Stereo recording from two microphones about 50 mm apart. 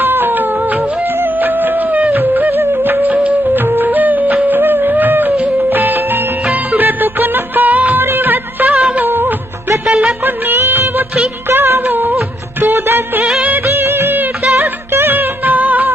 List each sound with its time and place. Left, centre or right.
0.0 s music: right
7.9 s music: right
8.7 s music of bollywood: right
9.0 s music of bollywood: right
9.8 s music: right
10.2 s music of bollywood: right
12.6 s music: right